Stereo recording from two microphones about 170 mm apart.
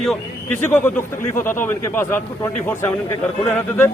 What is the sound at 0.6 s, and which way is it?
A man's voice, 10° left (ahead or behind).